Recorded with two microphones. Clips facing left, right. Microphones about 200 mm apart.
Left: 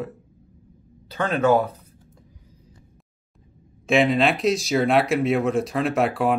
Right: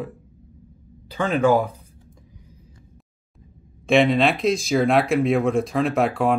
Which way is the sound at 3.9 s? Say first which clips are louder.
Right 2 dB; centre (ahead or behind).